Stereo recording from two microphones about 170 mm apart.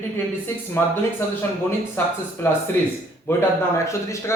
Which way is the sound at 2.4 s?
15° left (ahead or behind).